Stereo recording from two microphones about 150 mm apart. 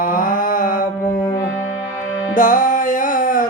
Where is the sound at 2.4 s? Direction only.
60° left (ahead or behind).